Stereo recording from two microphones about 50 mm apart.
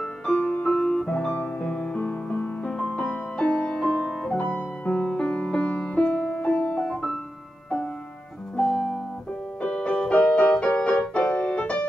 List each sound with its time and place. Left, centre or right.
0.0 s music: centre
0.4 s music: left
0.7 s music: centre
4.0 s piano: centre
4.8 s music: left
8.5 s music: centre
9.6 s music: left